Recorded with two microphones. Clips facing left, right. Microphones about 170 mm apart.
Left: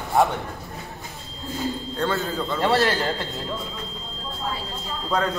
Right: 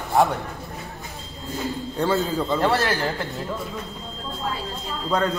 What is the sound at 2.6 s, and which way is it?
Speech, centre (ahead or behind).